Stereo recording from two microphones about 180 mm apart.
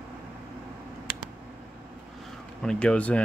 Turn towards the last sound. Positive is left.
turn(degrees=5)  # may be behind; listen again after turning